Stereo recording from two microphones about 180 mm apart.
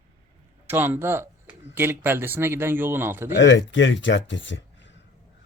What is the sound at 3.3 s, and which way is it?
Speech, 90° left.